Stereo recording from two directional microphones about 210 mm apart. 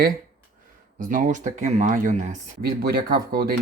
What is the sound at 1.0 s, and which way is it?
Speech, 35° right (ahead or behind).